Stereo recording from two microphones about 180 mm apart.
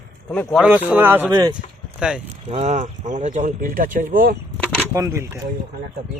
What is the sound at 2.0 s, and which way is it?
Speech, 5° right (ahead or behind).